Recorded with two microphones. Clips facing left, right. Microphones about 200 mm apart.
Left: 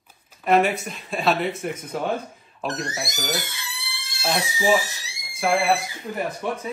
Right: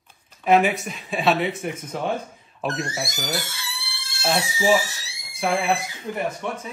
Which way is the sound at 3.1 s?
20° left (ahead or behind).